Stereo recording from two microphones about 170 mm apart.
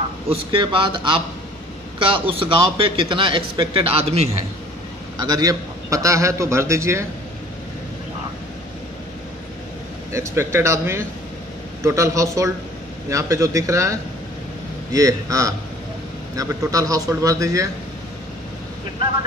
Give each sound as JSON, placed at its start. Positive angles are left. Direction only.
{"t": 0.3, "sound": "a man's voice", "side_deg": -30}
{"t": 5.1, "sound": "a man's voice", "side_deg": -20}
{"t": 10.1, "sound": "a man's voice", "side_deg": -15}